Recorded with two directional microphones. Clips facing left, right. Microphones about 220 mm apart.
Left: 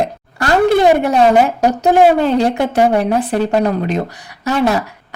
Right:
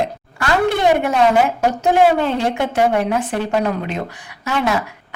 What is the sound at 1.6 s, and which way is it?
A woman's voice, 40° left (ahead or behind).